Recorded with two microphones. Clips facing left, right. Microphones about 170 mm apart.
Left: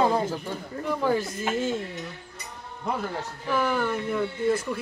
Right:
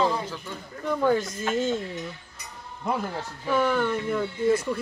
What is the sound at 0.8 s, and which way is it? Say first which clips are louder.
A man's voice: right 2 dB; 5° left (ahead or behind).